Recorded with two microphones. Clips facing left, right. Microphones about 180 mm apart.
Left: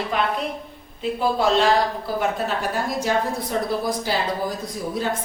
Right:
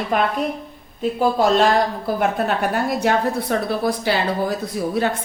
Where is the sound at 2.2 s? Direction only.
60° right (ahead or behind).